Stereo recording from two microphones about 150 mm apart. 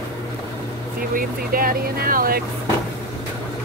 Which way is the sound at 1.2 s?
75° right (ahead or behind).